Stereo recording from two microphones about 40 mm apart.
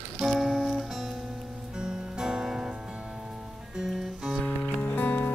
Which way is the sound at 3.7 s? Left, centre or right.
Centre.